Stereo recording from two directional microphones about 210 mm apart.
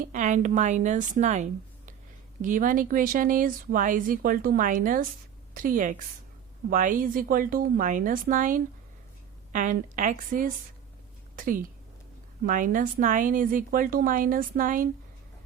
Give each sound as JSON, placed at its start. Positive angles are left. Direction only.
{"t": 0.0, "sound": "a woman's voice", "side_deg": -35}